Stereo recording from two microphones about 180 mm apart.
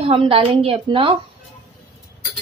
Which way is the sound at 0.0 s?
30° right (ahead or behind).